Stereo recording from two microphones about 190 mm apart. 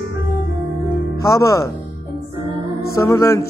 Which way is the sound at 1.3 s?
15° left (ahead or behind).